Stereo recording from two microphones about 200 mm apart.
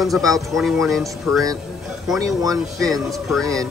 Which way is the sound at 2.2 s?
15° right (ahead or behind).